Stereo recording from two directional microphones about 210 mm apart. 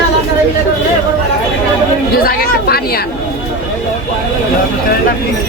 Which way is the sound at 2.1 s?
45° left (ahead or behind).